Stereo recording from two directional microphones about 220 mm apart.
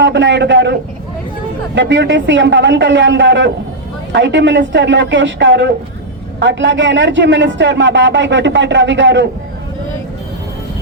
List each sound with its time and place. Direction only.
0.0 s speech: 55° right (ahead or behind)